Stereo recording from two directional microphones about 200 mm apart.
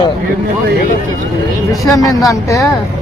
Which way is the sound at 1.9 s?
20° left (ahead or behind).